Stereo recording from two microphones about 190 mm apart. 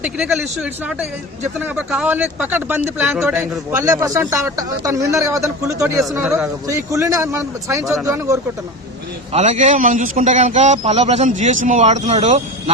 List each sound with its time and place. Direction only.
0.0 s a man's voice: 5° right (ahead or behind)
3.7 s a man's voice: 15° right (ahead or behind)
9.3 s a man's voice: 35° right (ahead or behind)